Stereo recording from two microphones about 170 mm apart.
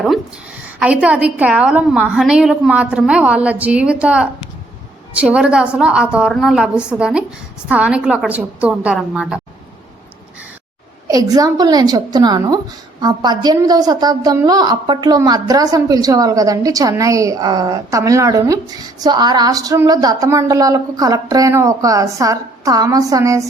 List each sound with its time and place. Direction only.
0.8 s a woman's voice: 5° right (ahead or behind)
11.1 s a woman's voice: 20° right (ahead or behind)